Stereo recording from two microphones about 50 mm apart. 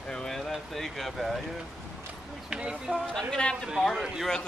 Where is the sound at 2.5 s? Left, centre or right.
Centre.